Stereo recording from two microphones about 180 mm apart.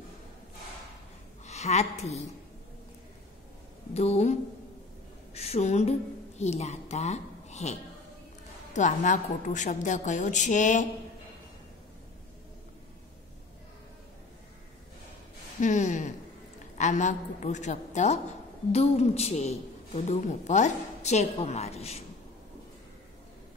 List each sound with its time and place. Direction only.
1.4 s a woman's voice: 40° left (ahead or behind)
3.9 s a woman's voice: 35° left (ahead or behind)
8.7 s a woman's voice: 45° left (ahead or behind)
15.6 s a woman's voice: 45° left (ahead or behind)